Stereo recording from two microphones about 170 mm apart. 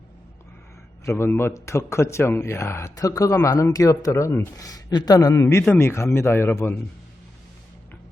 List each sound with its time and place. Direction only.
1.0 s a man's voice: 15° left (ahead or behind)